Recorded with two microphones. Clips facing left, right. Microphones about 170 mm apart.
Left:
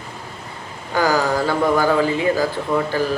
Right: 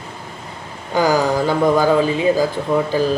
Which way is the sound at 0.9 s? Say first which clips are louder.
Right 2 dB; 15° right (ahead or behind).